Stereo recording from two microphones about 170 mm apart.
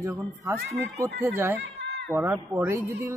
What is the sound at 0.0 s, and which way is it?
Speech, 20° right (ahead or behind).